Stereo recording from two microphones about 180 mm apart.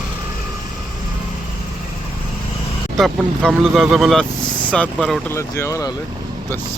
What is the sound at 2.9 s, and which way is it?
Speech, centre (ahead or behind).